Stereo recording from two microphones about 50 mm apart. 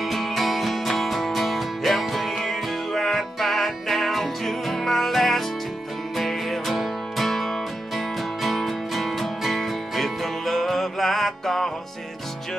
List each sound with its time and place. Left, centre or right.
0.0 s music: centre